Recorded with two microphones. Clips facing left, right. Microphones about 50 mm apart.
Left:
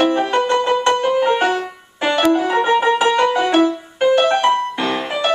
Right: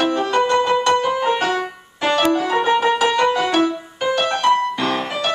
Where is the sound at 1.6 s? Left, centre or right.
Centre.